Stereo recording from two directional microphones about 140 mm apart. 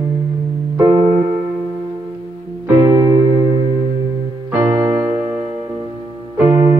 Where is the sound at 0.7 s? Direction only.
25° right (ahead or behind).